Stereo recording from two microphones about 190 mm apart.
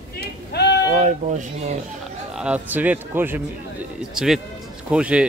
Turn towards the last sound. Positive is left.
turn(degrees=-5)  # may be behind; listen again after turning